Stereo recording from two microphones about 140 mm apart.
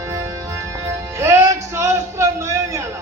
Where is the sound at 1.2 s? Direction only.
20° right (ahead or behind).